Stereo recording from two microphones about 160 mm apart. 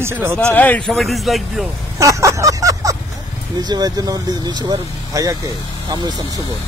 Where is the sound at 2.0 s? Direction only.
20° right (ahead or behind).